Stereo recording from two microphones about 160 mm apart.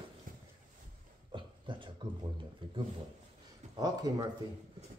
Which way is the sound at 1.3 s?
30° right (ahead or behind).